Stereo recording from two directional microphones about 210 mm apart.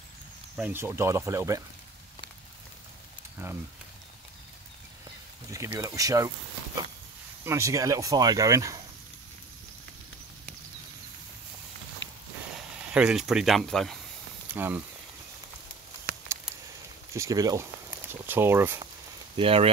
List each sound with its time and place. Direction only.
0.6 s speech: 10° right (ahead or behind)
5.5 s speech: 15° right (ahead or behind)
12.0 s walk: 65° left (ahead or behind)
12.8 s speech: 5° right (ahead or behind)
16.1 s a sound: 45° right (ahead or behind)
17.1 s speech: 15° right (ahead or behind)
19.3 s speech: 25° right (ahead or behind)